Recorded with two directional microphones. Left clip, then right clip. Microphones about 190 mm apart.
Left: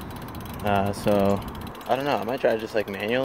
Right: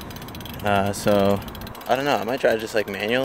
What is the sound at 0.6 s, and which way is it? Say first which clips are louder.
Speech: right 3 dB; 15° right (ahead or behind).